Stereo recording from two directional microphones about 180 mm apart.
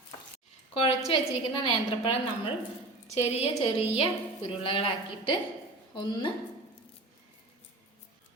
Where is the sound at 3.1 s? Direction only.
35° left (ahead or behind).